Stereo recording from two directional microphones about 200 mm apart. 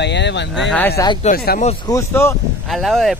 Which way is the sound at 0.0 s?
60° left (ahead or behind).